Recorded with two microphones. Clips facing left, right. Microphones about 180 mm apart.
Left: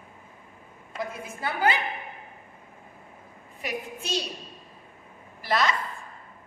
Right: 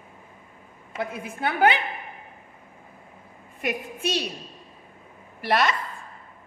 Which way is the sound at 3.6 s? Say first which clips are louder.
Right 5 dB; 60° right (ahead or behind).